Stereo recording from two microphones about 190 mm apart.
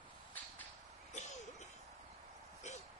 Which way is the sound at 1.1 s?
40° left (ahead or behind).